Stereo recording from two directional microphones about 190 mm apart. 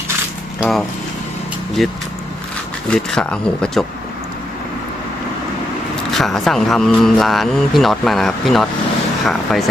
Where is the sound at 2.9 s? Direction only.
5° left (ahead or behind).